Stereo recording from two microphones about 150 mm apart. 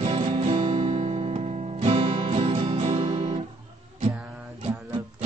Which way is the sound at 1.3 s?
45° right (ahead or behind).